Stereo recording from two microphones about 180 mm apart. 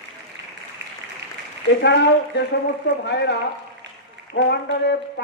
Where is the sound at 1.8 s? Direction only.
70° left (ahead or behind).